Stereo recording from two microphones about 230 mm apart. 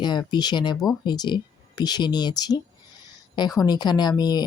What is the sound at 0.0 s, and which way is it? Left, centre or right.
Speech, centre.